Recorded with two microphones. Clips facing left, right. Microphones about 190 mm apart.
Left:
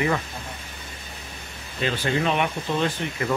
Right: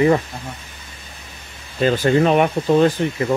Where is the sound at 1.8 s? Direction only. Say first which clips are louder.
Right 9 dB; 45° right (ahead or behind).